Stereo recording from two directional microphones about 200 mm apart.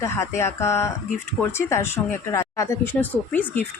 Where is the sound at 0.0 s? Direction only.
15° left (ahead or behind).